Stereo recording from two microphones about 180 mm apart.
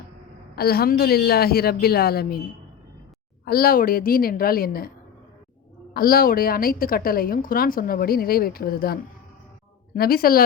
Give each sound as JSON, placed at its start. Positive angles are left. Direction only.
{"t": 0.5, "sound": "a woman's voice", "side_deg": 60}
{"t": 3.4, "sound": "a woman's voice", "side_deg": 55}
{"t": 5.9, "sound": "a woman's voice", "side_deg": 55}